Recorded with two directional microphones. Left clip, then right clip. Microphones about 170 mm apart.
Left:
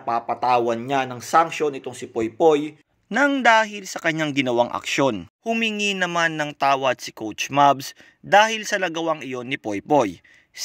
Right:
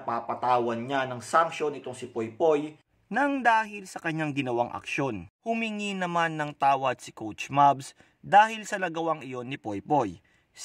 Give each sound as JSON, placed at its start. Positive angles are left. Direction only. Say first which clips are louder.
{"t": 0.0, "sound": "speech", "louder": "left 7 dB", "side_deg": 30}
{"t": 3.4, "sound": "speech", "louder": "left 8 dB", "side_deg": 20}
{"t": 5.4, "sound": "speech", "louder": "left 8 dB", "side_deg": 10}